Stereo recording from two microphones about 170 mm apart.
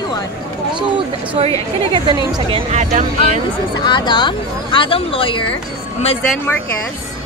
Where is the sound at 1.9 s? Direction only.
30° right (ahead or behind).